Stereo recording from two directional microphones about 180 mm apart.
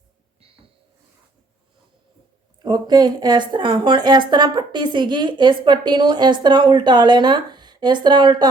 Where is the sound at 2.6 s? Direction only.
25° right (ahead or behind).